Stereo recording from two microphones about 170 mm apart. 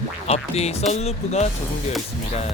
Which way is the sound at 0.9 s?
40° left (ahead or behind).